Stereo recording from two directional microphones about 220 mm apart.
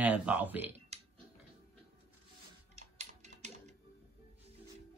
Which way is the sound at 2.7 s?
30° right (ahead or behind).